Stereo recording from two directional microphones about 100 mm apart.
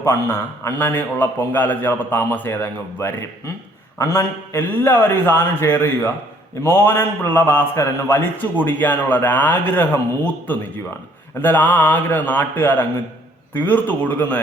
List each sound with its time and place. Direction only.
0.0 s a man's voice: 25° left (ahead or behind)